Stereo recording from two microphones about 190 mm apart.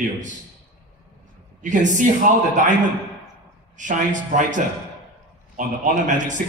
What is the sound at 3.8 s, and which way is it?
A man's voice, 40° right (ahead or behind).